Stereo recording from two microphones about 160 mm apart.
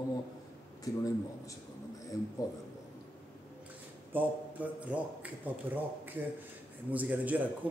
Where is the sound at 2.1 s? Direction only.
20° left (ahead or behind).